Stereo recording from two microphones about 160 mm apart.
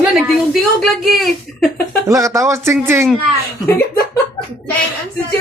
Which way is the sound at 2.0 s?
20° right (ahead or behind).